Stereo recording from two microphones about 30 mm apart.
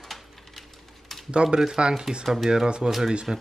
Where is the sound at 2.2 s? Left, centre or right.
Centre.